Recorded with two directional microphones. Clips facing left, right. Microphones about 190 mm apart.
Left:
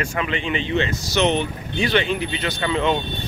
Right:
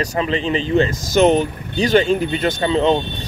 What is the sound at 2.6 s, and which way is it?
Speech, 35° right (ahead or behind).